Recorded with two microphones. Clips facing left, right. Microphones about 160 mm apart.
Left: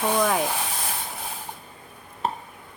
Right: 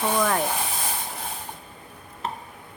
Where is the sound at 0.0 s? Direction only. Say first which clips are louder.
Left 1 dB; 5° left (ahead or behind).